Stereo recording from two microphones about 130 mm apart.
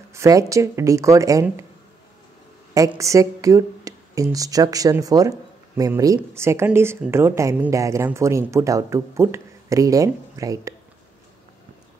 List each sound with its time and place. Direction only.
0.1 s speech: 25° right (ahead or behind)
3.0 s speech: 25° right (ahead or behind)